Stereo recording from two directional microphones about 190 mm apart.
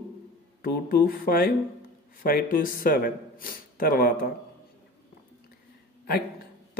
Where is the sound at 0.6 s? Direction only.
50° left (ahead or behind).